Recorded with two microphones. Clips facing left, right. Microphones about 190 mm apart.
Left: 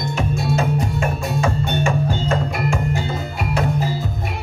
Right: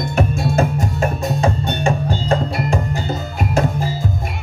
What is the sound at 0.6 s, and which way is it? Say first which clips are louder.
Music: right 2 dB; 35° right (ahead or behind).